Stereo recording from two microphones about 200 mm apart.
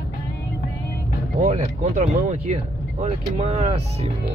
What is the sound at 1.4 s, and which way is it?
Speech, 35° right (ahead or behind).